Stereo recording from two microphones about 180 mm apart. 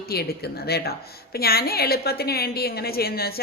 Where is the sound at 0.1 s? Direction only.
60° left (ahead or behind).